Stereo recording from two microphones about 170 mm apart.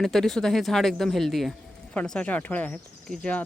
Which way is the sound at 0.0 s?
Centre (ahead or behind).